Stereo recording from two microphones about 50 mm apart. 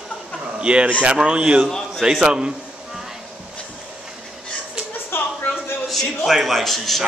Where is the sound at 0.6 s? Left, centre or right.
Right.